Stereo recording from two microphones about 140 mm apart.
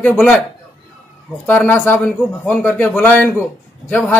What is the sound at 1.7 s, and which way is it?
A man's voice, 15° left (ahead or behind).